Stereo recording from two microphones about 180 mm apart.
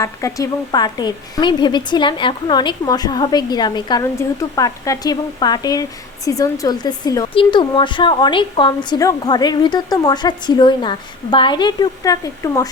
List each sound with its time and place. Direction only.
0.0 s speech: 20° left (ahead or behind)